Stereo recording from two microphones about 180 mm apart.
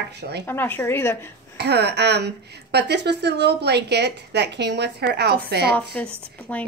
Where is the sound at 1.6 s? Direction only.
65° right (ahead or behind).